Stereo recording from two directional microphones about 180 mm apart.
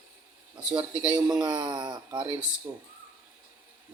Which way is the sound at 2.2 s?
10° right (ahead or behind).